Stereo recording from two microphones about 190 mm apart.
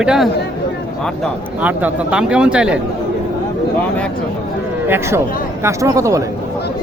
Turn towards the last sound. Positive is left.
turn(degrees=-15)  # may be behind; listen again after turning